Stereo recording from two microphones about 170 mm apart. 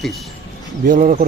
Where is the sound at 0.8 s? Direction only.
50° right (ahead or behind).